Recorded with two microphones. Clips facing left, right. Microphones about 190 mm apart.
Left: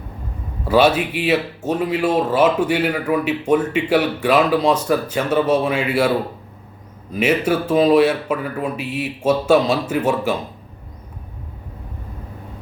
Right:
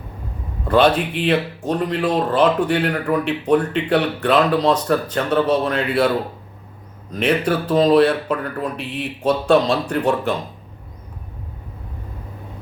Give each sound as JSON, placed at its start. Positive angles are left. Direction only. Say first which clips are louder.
{"t": 0.6, "sound": "speech", "louder": "even", "side_deg": 5}